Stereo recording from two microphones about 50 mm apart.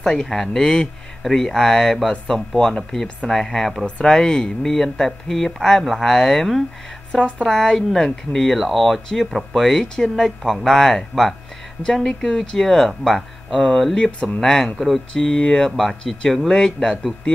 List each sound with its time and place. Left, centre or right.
0.0 s speech: centre
7.1 s speech: left
7.4 s speech: centre
8.5 s speech: centre
15.7 s speech: centre